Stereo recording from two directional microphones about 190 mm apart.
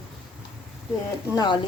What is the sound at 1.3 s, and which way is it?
Speech, 25° left (ahead or behind).